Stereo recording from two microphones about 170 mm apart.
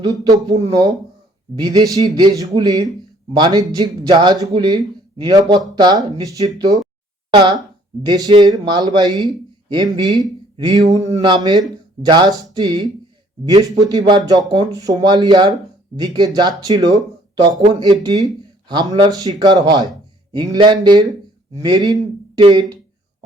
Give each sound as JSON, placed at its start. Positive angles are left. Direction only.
{"t": 0.0, "sound": "speech", "side_deg": -20}
{"t": 8.0, "sound": "speech", "side_deg": -25}